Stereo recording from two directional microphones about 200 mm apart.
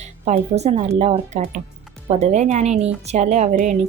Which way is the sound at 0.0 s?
35° right (ahead or behind).